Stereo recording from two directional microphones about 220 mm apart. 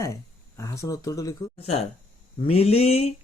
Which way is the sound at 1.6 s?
30° left (ahead or behind).